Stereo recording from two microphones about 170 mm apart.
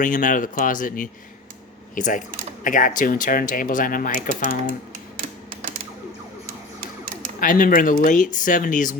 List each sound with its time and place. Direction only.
0.0 s speech: 50° left (ahead or behind)
7.3 s speech: 55° left (ahead or behind)